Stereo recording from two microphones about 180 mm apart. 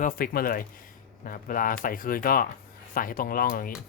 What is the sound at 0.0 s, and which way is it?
Speech, 50° left (ahead or behind).